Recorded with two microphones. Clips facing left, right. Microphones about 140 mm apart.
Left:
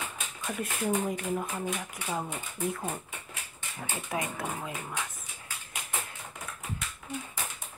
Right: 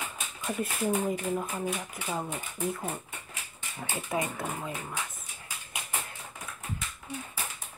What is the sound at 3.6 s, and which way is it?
Speech, 10° right (ahead or behind).